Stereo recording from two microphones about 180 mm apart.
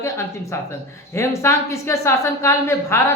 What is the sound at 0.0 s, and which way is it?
A woman's voice, 15° left (ahead or behind).